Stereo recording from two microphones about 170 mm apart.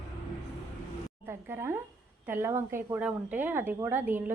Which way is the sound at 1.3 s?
15° right (ahead or behind).